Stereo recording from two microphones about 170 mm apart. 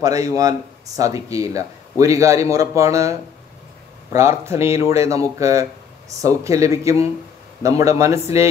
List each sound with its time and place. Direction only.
0.0 s speech: 20° right (ahead or behind)